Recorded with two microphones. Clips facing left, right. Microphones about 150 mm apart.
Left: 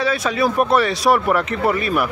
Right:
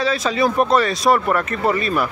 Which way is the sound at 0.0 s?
5° left (ahead or behind).